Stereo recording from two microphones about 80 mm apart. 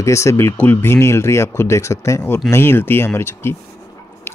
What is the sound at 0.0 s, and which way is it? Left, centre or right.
Speech, left.